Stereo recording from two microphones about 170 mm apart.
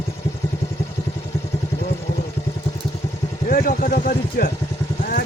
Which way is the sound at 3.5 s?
60° left (ahead or behind).